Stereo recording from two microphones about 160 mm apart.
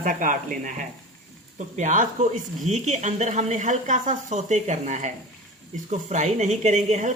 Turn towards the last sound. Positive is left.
turn(degrees=-45)  # may be behind; listen again after turning